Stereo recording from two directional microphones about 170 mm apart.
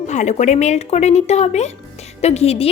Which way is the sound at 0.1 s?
45° left (ahead or behind).